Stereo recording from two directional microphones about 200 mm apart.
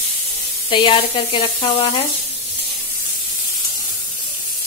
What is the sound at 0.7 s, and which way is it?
Sizzle, 25° left (ahead or behind).